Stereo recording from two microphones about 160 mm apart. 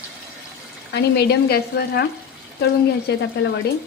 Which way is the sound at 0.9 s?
85° left.